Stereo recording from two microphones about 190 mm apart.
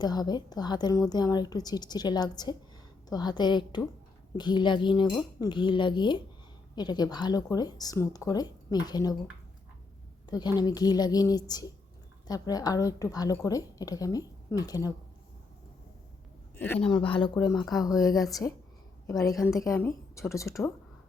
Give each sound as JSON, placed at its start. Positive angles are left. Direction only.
{"t": 0.0, "sound": "a woman's voice", "side_deg": 20}
{"t": 10.2, "sound": "a woman's voice", "side_deg": 20}
{"t": 16.6, "sound": "speech", "side_deg": 10}
{"t": 16.9, "sound": "a woman's voice", "side_deg": 25}